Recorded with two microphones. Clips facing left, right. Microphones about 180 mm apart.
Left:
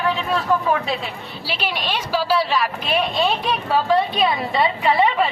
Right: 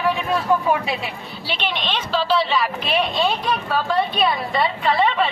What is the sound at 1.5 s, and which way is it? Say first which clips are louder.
A woman's voice: even; 10° left (ahead or behind).